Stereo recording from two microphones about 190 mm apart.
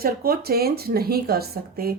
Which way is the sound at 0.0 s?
50° right (ahead or behind).